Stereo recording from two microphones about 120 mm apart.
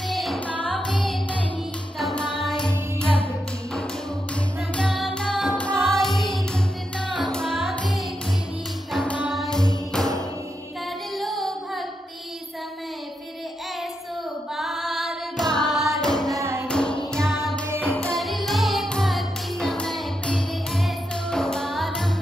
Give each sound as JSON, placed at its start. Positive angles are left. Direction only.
{"t": 0.1, "sound": "music", "side_deg": 0}
{"t": 0.5, "sound": "music", "side_deg": 10}
{"t": 2.0, "sound": "music", "side_deg": 5}
{"t": 4.7, "sound": "music", "side_deg": 5}
{"t": 11.1, "sound": "carnatic music", "side_deg": 0}
{"t": 14.6, "sound": "singing", "side_deg": 0}
{"t": 15.8, "sound": "music", "side_deg": 5}
{"t": 16.3, "sound": "music", "side_deg": -20}
{"t": 16.6, "sound": "music", "side_deg": 10}